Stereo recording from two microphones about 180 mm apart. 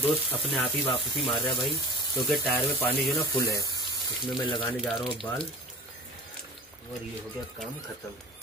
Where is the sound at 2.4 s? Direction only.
10° left (ahead or behind).